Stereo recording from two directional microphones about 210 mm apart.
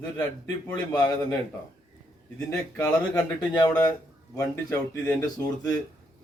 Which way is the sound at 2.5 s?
10° left (ahead or behind).